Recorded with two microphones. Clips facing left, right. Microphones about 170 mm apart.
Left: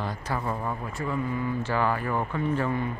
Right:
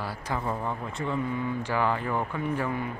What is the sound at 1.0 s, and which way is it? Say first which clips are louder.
Speech: even; 20° right (ahead or behind).